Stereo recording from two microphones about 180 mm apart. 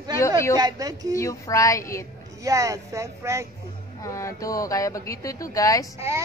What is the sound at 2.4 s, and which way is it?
Speech, 20° right (ahead or behind).